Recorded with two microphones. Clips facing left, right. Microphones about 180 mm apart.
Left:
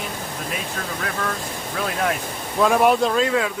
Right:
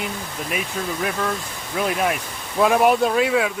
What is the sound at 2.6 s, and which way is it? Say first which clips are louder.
Speech: even; 5° right (ahead or behind).